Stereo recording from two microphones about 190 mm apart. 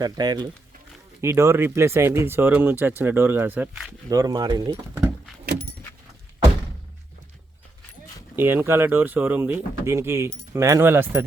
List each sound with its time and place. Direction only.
0.0 s speech: 20° right (ahead or behind); by 3.9 s 5° right (ahead or behind)
4.1 s speech: 20° right (ahead or behind)
4.9 s keys jangling: 10° right (ahead or behind)
8.4 s speech: 10° right (ahead or behind)